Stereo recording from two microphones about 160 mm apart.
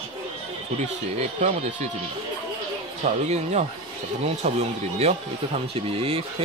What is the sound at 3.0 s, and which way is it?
Speech, 45° right (ahead or behind).